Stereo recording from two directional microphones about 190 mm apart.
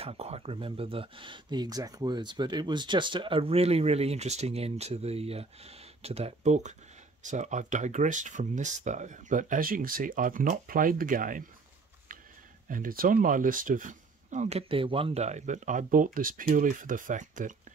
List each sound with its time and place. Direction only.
0.0 s speech: 35° right (ahead or behind)
12.6 s speech: 45° right (ahead or behind)